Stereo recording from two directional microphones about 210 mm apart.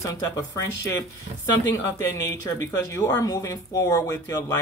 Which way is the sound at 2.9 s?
15° left (ahead or behind).